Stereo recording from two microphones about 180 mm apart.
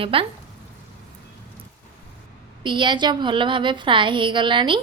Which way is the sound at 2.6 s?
25° right (ahead or behind).